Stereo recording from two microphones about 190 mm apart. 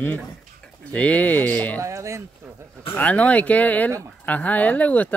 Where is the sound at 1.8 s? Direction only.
15° right (ahead or behind).